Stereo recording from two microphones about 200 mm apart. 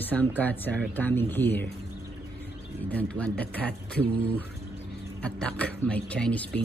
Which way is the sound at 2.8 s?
5° left (ahead or behind).